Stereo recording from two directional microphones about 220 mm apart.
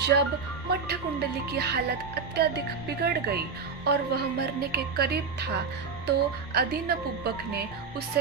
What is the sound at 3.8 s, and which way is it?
Speech, 45° right (ahead or behind).